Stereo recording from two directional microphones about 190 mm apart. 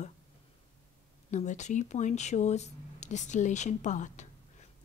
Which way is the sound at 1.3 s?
40° left (ahead or behind).